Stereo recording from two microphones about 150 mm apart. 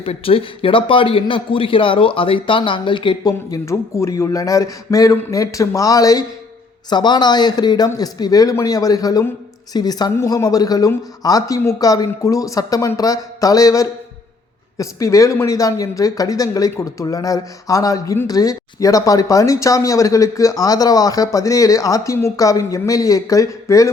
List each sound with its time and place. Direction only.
0.0 s a man's voice: 40° left (ahead or behind); by 23.9 s 20° left (ahead or behind)